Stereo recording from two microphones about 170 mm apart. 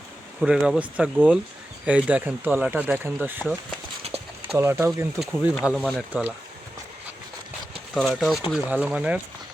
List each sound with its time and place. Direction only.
0.3 s speech: 5° right (ahead or behind)
7.9 s speech: centre (ahead or behind)